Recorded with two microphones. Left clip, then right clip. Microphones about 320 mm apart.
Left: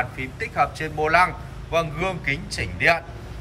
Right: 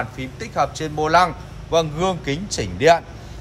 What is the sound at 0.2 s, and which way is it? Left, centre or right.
A man's voice, centre.